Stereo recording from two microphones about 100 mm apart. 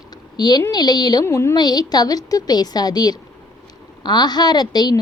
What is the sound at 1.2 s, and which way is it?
Speech, 25° left (ahead or behind).